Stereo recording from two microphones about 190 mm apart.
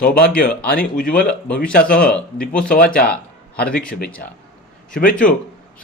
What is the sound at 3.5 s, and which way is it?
Speech, 50° left (ahead or behind).